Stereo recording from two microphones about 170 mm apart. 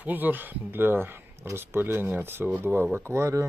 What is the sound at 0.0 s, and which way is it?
Speech, 10° right (ahead or behind).